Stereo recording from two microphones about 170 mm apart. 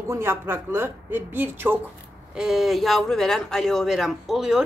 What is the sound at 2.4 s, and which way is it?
Speech, centre (ahead or behind).